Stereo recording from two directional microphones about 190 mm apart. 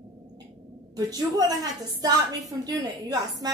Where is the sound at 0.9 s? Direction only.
20° right (ahead or behind).